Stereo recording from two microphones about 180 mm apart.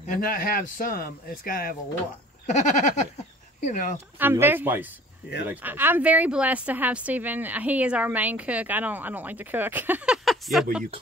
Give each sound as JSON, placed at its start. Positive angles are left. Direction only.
{"t": 0.0, "sound": "speech", "side_deg": 50}
{"t": 2.5, "sound": "goat", "side_deg": 40}
{"t": 3.6, "sound": "speech", "side_deg": 45}
{"t": 4.2, "sound": "speech", "side_deg": -10}